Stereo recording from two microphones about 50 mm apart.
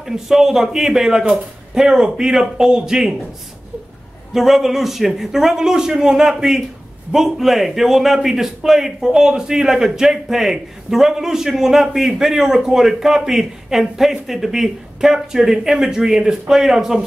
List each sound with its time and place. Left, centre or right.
0.0 s a man's voice: centre
4.3 s a man's voice: centre